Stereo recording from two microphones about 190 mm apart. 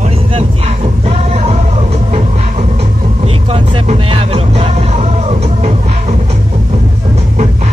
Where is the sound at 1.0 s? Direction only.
35° right (ahead or behind).